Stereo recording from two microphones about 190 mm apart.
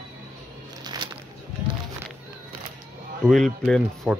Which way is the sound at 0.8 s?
20° right (ahead or behind).